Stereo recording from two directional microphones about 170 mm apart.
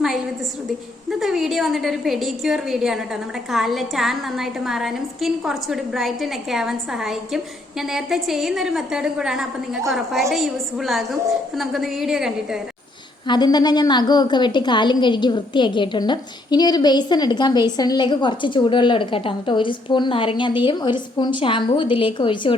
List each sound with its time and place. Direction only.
1.2 s a woman's voice: centre (ahead or behind)
13.2 s a woman's voice: 25° left (ahead or behind)